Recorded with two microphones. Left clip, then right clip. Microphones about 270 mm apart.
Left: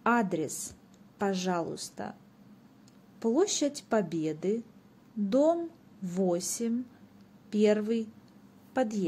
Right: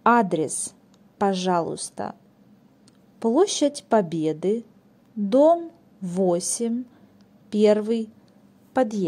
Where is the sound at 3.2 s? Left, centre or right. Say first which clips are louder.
Right 7 dB; centre.